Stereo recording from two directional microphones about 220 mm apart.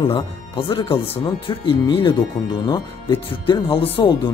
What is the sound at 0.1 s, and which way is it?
Speech, 25° left (ahead or behind).